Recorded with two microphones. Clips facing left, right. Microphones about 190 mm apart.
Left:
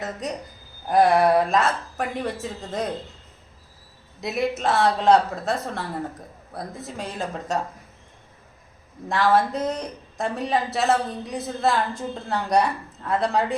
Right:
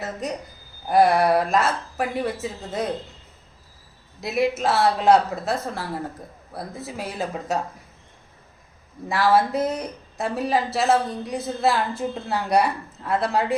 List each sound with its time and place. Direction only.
0.0 s speech: centre (ahead or behind)
4.2 s speech: centre (ahead or behind)
9.0 s speech: 5° right (ahead or behind)